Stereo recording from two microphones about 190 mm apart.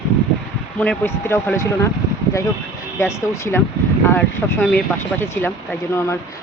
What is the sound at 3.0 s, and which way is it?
Speech, 15° left (ahead or behind).